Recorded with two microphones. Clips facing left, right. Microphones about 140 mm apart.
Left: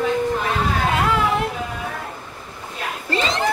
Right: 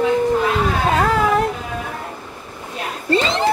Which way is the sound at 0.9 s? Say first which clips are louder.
Right 5 dB; 40° right (ahead or behind).